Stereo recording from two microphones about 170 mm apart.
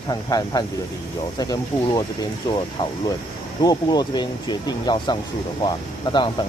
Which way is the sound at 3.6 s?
25° left (ahead or behind).